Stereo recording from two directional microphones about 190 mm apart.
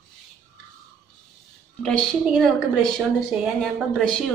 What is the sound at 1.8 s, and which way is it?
A woman's voice, 5° left (ahead or behind).